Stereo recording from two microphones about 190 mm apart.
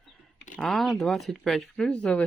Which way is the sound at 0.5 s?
Centre (ahead or behind).